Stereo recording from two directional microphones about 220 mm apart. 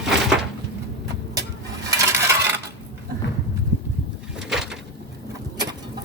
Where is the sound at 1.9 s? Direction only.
15° right (ahead or behind).